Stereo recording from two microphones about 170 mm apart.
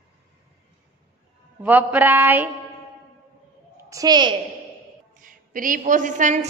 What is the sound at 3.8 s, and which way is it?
Speech, 20° right (ahead or behind).